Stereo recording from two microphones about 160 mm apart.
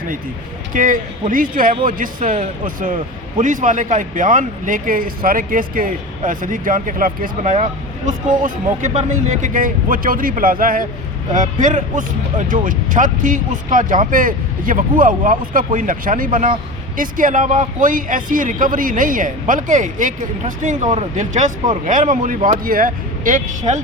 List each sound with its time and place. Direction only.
0.7 s a man's voice: 55° right (ahead or behind)
22.4 s speech: 40° right (ahead or behind)
22.6 s a man's voice: 60° right (ahead or behind)